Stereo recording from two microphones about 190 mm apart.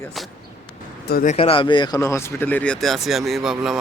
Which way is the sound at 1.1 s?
50° left (ahead or behind).